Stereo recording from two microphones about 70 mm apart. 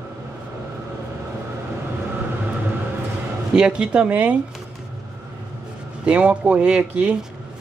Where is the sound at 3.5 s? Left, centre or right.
Centre.